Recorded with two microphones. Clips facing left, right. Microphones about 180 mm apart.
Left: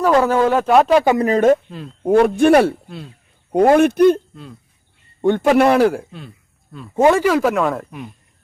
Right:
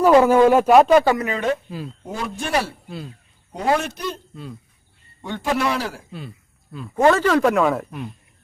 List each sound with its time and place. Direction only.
0.0 s speech: 10° right (ahead or behind)
1.2 s speech: 45° left (ahead or behind)
2.0 s a man's voice: 60° left (ahead or behind)
5.2 s a man's voice: 55° left (ahead or behind)
6.1 s speech: centre (ahead or behind)
6.9 s speech: 15° left (ahead or behind)